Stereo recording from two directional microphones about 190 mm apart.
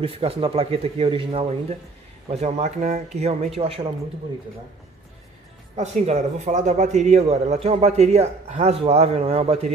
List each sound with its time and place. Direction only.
0.0 s a man's voice: 30° right (ahead or behind)
5.8 s a man's voice: 35° right (ahead or behind)